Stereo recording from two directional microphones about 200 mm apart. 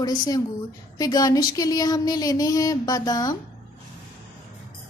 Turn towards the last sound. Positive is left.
turn(degrees=20)  # may be behind; listen again after turning